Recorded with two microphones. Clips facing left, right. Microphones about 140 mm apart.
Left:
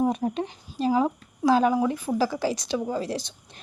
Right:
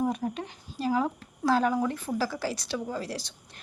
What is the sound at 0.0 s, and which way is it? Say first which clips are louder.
Speech: left 5 dB; 25° left (ahead or behind).